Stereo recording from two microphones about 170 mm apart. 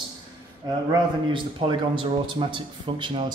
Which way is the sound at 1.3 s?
30° right (ahead or behind).